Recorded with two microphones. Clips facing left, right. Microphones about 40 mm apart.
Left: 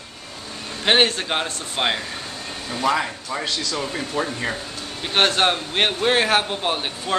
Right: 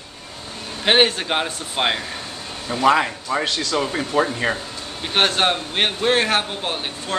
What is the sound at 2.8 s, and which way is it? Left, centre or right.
Speech, right.